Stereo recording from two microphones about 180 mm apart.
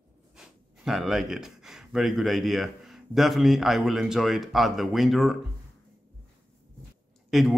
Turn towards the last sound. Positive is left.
turn(degrees=0)  # may be behind; listen again after turning